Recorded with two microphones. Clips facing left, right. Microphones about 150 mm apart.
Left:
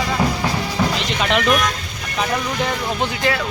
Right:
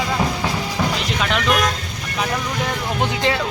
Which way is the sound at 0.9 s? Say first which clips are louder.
Left 2 dB; centre (ahead or behind).